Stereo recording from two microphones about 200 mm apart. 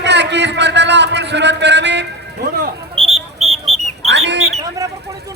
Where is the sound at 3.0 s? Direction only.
30° right (ahead or behind).